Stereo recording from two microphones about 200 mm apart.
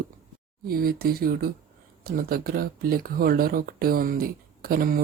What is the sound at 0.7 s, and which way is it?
Speech, 45° right (ahead or behind).